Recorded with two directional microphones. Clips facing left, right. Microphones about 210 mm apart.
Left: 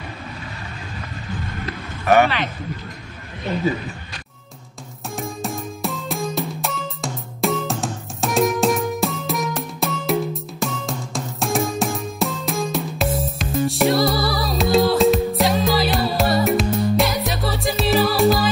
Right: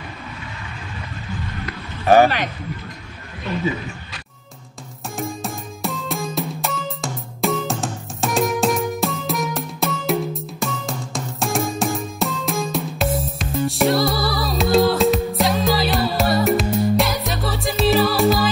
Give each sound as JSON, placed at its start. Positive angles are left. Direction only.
{"t": 2.0, "sound": "a man's voice", "side_deg": -35}
{"t": 5.1, "sound": "music", "side_deg": 0}